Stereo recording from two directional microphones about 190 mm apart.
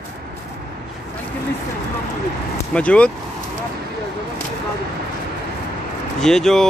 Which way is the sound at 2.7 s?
5° left (ahead or behind).